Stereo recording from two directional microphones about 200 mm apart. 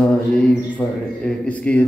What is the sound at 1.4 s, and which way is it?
Speech, 5° left (ahead or behind).